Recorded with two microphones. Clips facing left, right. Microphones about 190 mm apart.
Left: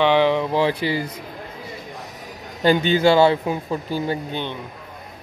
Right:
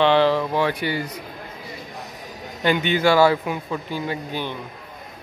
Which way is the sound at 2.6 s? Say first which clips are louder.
Left 3 dB; 35° left (ahead or behind).